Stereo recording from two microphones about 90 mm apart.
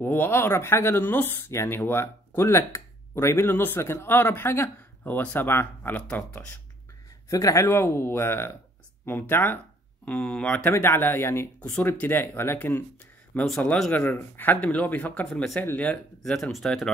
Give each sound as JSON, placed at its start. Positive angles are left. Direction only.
{"t": 0.0, "sound": "speech", "side_deg": 25}
{"t": 7.2, "sound": "speech", "side_deg": 35}
{"t": 10.0, "sound": "speech", "side_deg": 15}
{"t": 10.6, "sound": "speech", "side_deg": 25}
{"t": 15.2, "sound": "speech", "side_deg": 5}
{"t": 15.6, "sound": "speech", "side_deg": 20}
{"t": 16.4, "sound": "speech", "side_deg": 0}